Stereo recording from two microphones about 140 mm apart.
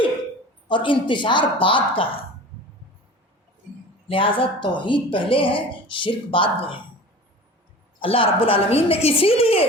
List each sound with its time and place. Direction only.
0.7 s speech: 35° left (ahead or behind)
4.1 s speech: 40° left (ahead or behind)
7.9 s a woman's voice: 40° left (ahead or behind)